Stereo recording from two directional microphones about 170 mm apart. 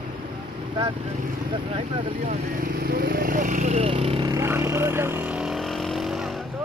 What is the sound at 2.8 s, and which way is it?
Speech, 65° right (ahead or behind).